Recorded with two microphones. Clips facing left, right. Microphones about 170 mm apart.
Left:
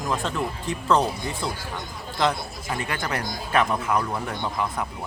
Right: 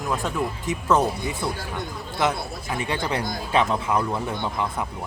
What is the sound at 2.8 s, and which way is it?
Speech, 20° right (ahead or behind).